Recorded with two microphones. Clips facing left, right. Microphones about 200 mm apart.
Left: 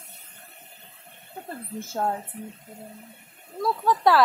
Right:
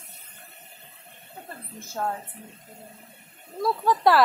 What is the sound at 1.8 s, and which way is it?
Speech, 30° left (ahead or behind).